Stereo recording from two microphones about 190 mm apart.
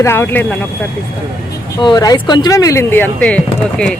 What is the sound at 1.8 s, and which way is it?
Speech, 20° left (ahead or behind).